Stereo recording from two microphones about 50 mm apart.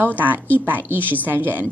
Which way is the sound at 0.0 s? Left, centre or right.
Right.